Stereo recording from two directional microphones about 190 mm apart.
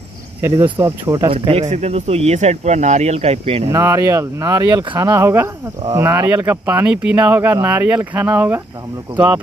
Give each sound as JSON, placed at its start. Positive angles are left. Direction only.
{"t": 0.7, "sound": "speech", "side_deg": -15}
{"t": 1.5, "sound": "speech", "side_deg": -35}
{"t": 3.7, "sound": "speech", "side_deg": -15}